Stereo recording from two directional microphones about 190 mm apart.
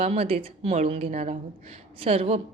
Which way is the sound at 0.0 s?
35° right (ahead or behind).